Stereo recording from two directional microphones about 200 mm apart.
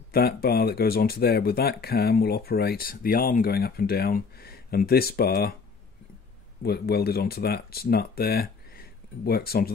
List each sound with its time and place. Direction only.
0.1 s speech: 50° left (ahead or behind)
6.6 s speech: 50° left (ahead or behind)